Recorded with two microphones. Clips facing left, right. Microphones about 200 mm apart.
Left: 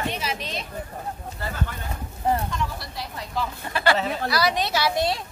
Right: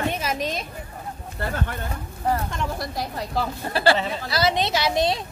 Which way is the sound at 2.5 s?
50° right (ahead or behind).